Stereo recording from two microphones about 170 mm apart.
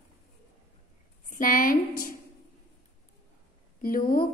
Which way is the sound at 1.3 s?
55° left (ahead or behind).